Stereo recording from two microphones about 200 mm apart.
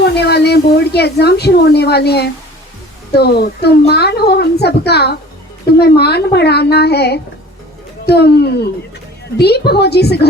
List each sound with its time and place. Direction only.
0.1 s a woman's voice: 55° left (ahead or behind)